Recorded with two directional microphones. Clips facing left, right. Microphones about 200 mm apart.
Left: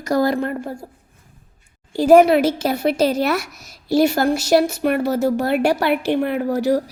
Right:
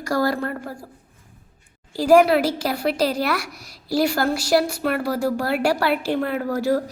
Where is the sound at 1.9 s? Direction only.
20° left (ahead or behind).